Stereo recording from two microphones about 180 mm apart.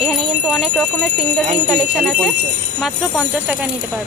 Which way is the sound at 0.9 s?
10° left (ahead or behind).